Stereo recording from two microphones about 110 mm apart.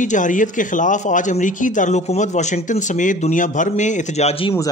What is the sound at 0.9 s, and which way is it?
A man's voice, 90° left.